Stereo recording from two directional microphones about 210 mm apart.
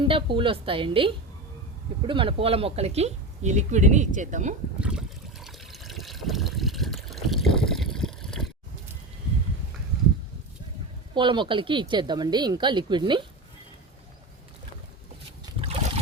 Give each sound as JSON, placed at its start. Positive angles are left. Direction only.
{"t": 0.1, "sound": "a woman's voice", "side_deg": -25}
{"t": 4.8, "sound": "water", "side_deg": -5}
{"t": 11.1, "sound": "a woman's voice", "side_deg": -25}
{"t": 15.6, "sound": "boat", "side_deg": -30}